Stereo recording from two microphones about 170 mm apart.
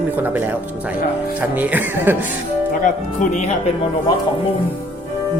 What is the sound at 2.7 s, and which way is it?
Speech, 50° left (ahead or behind).